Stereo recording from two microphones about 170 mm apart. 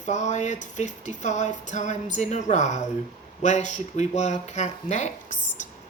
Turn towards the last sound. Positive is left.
turn(degrees=45)  # may be behind; listen again after turning